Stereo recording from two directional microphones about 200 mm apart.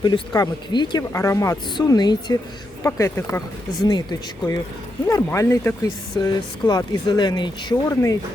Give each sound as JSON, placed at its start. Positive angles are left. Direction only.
{"t": 0.0, "sound": "speech", "side_deg": 20}
{"t": 5.0, "sound": "speech", "side_deg": 15}